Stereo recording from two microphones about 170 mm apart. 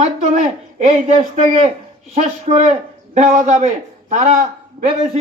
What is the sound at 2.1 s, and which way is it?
A man's voice, 45° right (ahead or behind).